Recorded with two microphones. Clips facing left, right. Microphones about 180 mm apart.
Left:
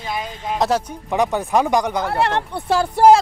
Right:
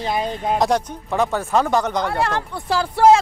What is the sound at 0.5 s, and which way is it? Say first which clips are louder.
Speech: even; centre (ahead or behind).